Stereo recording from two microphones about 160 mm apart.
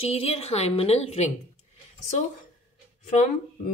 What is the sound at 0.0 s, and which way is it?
A woman's voice, 40° left (ahead or behind).